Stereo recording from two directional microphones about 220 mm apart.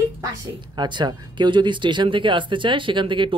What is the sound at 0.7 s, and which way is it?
Speech, 20° right (ahead or behind).